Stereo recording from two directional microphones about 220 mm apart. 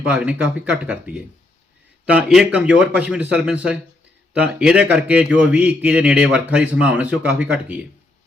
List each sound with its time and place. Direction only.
0.0 s a man's voice: 5° right (ahead or behind)